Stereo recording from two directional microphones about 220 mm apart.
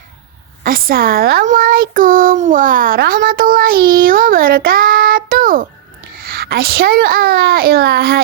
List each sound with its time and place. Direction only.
0.6 s a child's voice: 40° right (ahead or behind)